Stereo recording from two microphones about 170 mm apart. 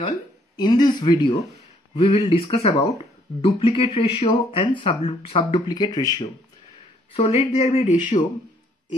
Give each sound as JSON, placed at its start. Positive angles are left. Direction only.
{"t": 0.6, "sound": "speech", "side_deg": 25}
{"t": 7.2, "sound": "speech", "side_deg": 35}